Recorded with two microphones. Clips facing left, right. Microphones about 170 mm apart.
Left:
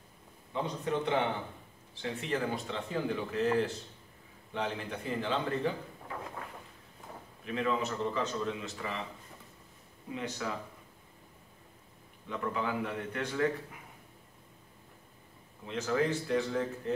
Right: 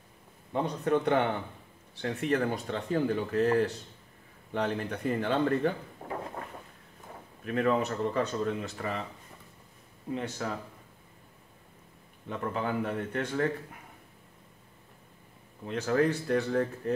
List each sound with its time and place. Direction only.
0.5 s speech: 55° right (ahead or behind)
6.0 s a sound: 35° right (ahead or behind)
7.4 s speech: 50° right (ahead or behind)
10.1 s speech: 45° right (ahead or behind)
12.3 s speech: 45° right (ahead or behind)
15.6 s speech: 50° right (ahead or behind)